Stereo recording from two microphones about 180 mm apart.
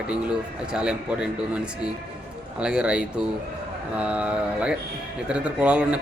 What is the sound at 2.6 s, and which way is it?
A man's voice, 5° right (ahead or behind).